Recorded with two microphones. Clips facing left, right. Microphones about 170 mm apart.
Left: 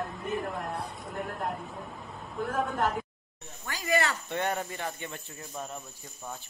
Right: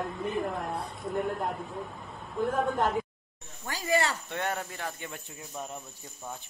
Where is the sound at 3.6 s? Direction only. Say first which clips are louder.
Right 1 dB; 30° right (ahead or behind).